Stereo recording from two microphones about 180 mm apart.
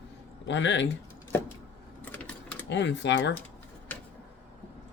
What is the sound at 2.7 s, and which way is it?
Speech, 75° left (ahead or behind).